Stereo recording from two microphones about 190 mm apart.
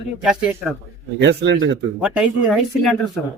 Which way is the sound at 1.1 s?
70° right (ahead or behind).